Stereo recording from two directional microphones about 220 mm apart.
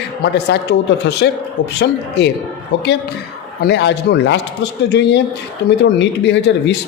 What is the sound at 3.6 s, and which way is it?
A man's voice, 50° left (ahead or behind).